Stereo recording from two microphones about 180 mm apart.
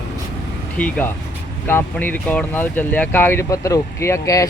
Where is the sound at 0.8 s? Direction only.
5° left (ahead or behind).